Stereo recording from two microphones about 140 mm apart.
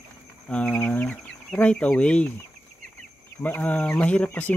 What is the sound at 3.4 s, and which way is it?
Speech, 10° left (ahead or behind).